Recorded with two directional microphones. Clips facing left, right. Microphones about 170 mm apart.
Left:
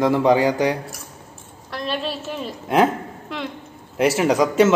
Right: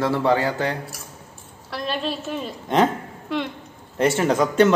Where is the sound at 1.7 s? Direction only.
Centre (ahead or behind).